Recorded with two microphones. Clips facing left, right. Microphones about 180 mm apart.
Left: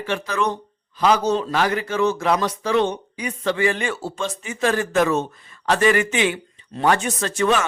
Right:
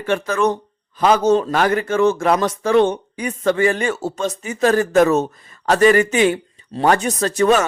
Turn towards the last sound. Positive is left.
turn(degrees=-40)  # may be behind; listen again after turning